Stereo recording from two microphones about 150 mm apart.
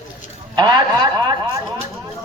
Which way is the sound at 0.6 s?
30° right (ahead or behind).